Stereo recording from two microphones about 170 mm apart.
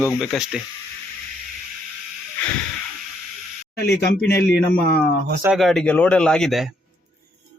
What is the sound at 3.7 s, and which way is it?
Speech, 75° left (ahead or behind).